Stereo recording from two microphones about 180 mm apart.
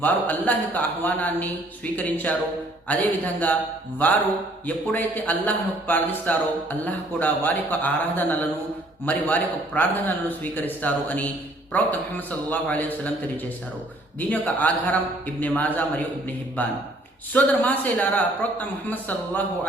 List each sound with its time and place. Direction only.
0.0 s a man's voice: 10° left (ahead or behind)
14.2 s a man's voice: 10° left (ahead or behind)